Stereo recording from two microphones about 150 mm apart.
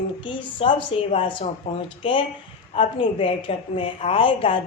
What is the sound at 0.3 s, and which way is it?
Speech, 35° left (ahead or behind).